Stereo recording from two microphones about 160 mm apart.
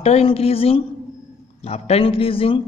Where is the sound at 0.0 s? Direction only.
40° left (ahead or behind).